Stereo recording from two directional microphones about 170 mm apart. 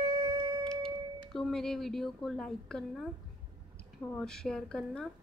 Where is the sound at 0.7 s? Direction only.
5° left (ahead or behind).